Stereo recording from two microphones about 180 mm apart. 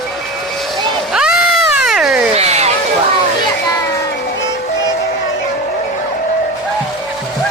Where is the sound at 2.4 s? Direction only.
35° right (ahead or behind).